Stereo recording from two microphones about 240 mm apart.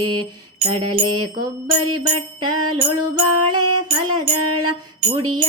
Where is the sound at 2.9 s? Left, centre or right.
Right.